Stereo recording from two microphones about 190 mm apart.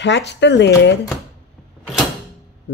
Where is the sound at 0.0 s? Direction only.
70° left (ahead or behind).